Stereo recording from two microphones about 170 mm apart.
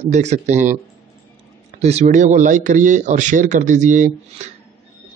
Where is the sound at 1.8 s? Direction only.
40° right (ahead or behind).